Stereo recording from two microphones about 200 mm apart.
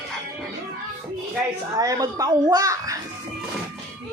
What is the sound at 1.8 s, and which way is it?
A child's voice, 15° right (ahead or behind).